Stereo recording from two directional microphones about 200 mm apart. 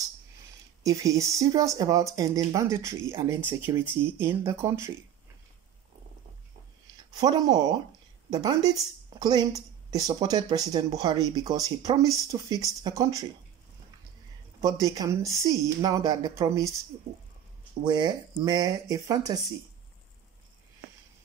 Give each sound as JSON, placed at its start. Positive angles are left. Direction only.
{"t": 0.8, "sound": "a woman's voice", "side_deg": -15}
{"t": 7.2, "sound": "a woman's voice", "side_deg": -20}
{"t": 14.6, "sound": "a woman's voice", "side_deg": -15}
{"t": 17.8, "sound": "speech", "side_deg": -20}